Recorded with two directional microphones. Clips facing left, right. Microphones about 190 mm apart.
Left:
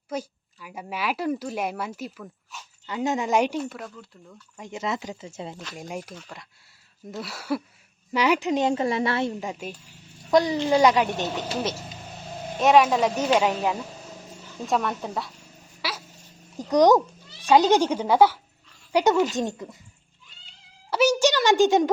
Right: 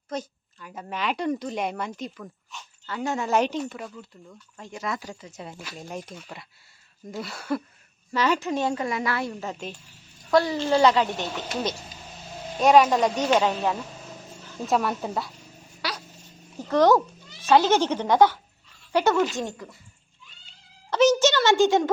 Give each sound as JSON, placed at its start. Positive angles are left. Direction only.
{"t": 0.1, "sound": "a woman's voice", "side_deg": 10}
{"t": 2.8, "sound": "speech", "side_deg": 20}
{"t": 4.5, "sound": "a woman's voice", "side_deg": 20}
{"t": 5.7, "sound": "speech", "side_deg": 15}
{"t": 6.1, "sound": "a woman's voice", "side_deg": -5}
{"t": 9.5, "sound": "speech", "side_deg": 10}
{"t": 12.5, "sound": "a woman's voice", "side_deg": 0}
{"t": 14.7, "sound": "a woman's voice", "side_deg": -5}
{"t": 15.8, "sound": "a sound", "side_deg": 5}
{"t": 16.6, "sound": "a woman's voice", "side_deg": 15}
{"t": 20.9, "sound": "speech", "side_deg": 10}